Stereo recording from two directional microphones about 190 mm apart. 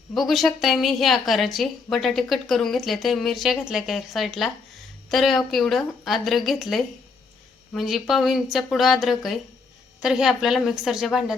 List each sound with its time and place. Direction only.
0.1 s a woman's voice: centre (ahead or behind)